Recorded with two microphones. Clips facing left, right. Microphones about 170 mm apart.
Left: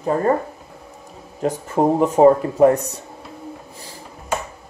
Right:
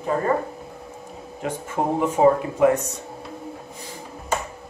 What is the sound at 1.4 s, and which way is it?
Speech, 35° left (ahead or behind).